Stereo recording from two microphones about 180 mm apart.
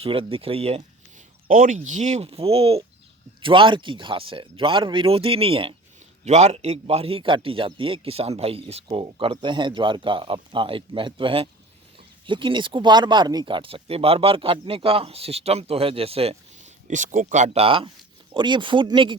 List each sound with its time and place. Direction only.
0.0 s speech: 30° right (ahead or behind)
1.5 s a man's voice: 45° right (ahead or behind); by 19.1 s 25° right (ahead or behind)